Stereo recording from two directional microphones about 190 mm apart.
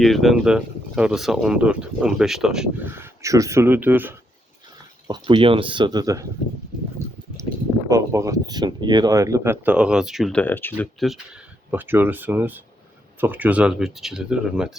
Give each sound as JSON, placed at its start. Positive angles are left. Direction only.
{"t": 0.0, "sound": "speech", "side_deg": 0}
{"t": 5.0, "sound": "speech", "side_deg": -25}
{"t": 7.9, "sound": "speech", "side_deg": -15}
{"t": 11.7, "sound": "speech", "side_deg": -10}